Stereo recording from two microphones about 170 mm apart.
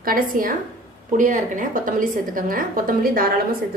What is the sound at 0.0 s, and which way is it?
A woman's voice, 55° right (ahead or behind).